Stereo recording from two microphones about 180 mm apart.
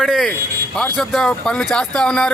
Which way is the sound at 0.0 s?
Centre (ahead or behind).